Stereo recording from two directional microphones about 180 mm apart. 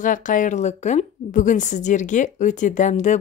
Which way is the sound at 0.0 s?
45° left (ahead or behind).